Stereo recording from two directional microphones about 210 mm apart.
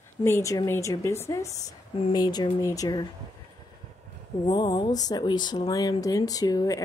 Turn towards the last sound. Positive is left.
turn(degrees=15)  # may be behind; listen again after turning